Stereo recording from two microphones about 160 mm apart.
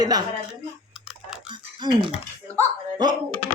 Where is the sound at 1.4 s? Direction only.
30° right (ahead or behind).